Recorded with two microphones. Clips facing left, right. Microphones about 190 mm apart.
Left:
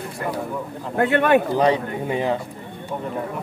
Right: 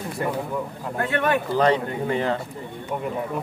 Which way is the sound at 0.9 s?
65° left (ahead or behind).